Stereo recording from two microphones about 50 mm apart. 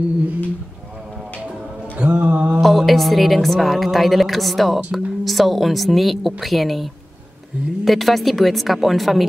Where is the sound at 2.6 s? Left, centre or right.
Centre.